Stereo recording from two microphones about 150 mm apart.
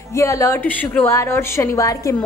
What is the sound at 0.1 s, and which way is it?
A woman's voice, 20° left (ahead or behind).